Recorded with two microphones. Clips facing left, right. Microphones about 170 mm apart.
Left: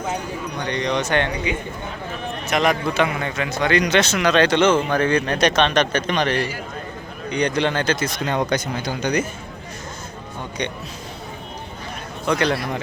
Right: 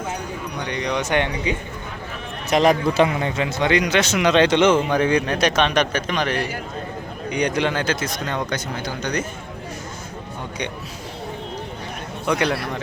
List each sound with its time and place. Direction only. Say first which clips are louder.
0.6 s speech: left 2 dB; 10° right (ahead or behind)
2.5 s a man's voice: right 3 dB; 35° right (ahead or behind); by 8.1 s 5° right (ahead or behind)
8.3 s speech: left 7 dB; 20° left (ahead or behind)
12.2 s speech: left 1 dB; 10° right (ahead or behind)